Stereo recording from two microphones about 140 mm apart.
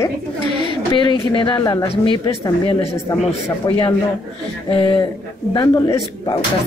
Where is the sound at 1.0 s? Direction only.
35° left (ahead or behind).